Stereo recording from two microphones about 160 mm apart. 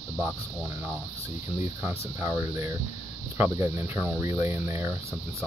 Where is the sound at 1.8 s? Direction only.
20° right (ahead or behind).